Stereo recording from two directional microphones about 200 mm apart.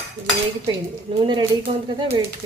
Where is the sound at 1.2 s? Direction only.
25° right (ahead or behind).